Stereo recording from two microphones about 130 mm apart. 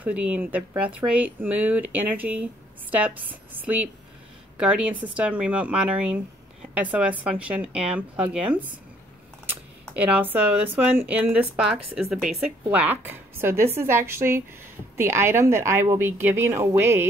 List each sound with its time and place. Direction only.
0.0 s speech: 10° right (ahead or behind)
4.6 s a woman's voice: 5° right (ahead or behind)
9.9 s speech: 10° right (ahead or behind)